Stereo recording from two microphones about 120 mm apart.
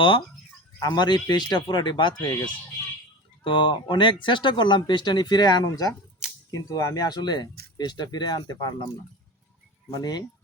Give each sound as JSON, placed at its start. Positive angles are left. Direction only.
{"t": 0.8, "sound": "speech", "side_deg": 40}
{"t": 9.9, "sound": "speech", "side_deg": 35}